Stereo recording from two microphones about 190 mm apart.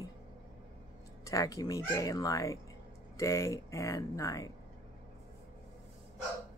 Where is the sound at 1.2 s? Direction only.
15° left (ahead or behind).